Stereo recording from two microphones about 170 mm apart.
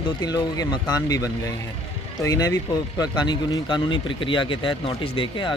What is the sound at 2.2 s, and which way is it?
Speech, 20° left (ahead or behind).